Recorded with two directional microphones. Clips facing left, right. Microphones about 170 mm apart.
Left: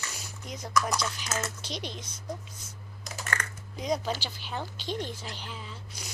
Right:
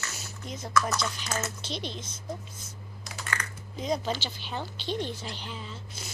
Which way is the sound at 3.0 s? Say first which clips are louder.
Left 1 dB; 45° left (ahead or behind).